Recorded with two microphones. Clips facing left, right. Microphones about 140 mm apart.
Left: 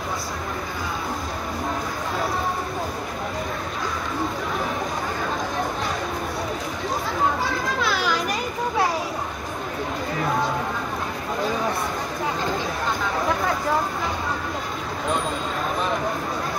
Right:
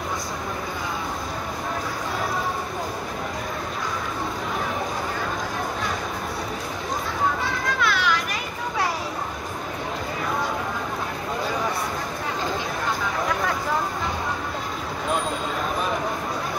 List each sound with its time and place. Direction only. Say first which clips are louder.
7.8 s chatter: right 2 dB; 35° left (ahead or behind)